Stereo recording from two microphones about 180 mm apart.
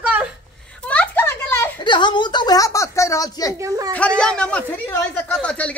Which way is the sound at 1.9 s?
25° left (ahead or behind).